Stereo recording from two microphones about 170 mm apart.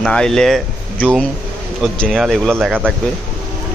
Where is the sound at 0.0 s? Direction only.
5° left (ahead or behind).